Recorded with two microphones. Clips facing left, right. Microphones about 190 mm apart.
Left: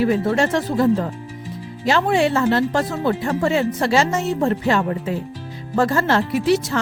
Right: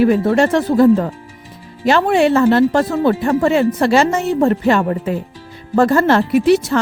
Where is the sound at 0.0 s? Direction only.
60° right (ahead or behind).